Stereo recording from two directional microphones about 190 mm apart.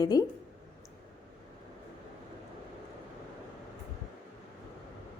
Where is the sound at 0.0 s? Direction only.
20° left (ahead or behind).